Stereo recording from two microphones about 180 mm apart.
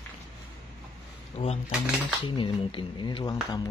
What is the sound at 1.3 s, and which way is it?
Speech, 35° left (ahead or behind).